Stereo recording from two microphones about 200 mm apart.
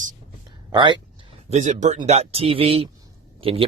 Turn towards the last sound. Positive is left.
turn(degrees=-25)  # may be behind; listen again after turning